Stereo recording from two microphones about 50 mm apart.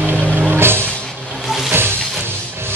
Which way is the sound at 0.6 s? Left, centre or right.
Right.